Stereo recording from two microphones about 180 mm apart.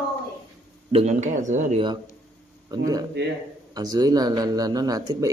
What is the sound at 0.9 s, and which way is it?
Speech, 35° right (ahead or behind).